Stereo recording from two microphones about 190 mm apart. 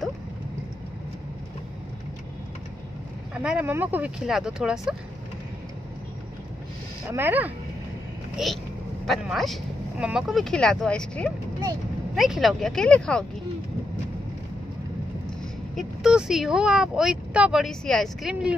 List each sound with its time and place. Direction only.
3.3 s speech: 5° right (ahead or behind)
7.1 s speech: 10° right (ahead or behind); by 13.2 s 5° left (ahead or behind)
15.2 s speech: centre (ahead or behind)